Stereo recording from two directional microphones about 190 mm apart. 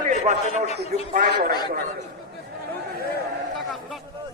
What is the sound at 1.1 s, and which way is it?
Speech, 50° right (ahead or behind).